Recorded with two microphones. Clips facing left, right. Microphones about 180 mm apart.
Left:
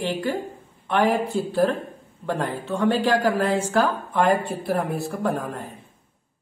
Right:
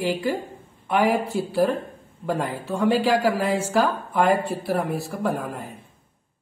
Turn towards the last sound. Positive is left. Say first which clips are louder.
# left 1 dB
turn(degrees=0)  # may be behind; listen again after turning